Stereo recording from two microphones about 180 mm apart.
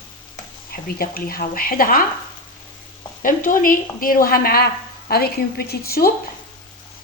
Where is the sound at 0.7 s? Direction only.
55° left (ahead or behind).